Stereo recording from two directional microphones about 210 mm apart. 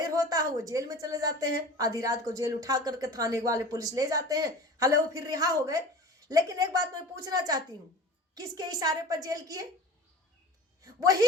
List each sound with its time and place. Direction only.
0.0 s a woman's voice: 15° right (ahead or behind)
10.8 s speech: 15° right (ahead or behind)